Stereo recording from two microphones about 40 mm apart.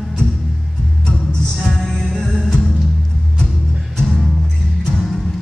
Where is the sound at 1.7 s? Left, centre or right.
Centre.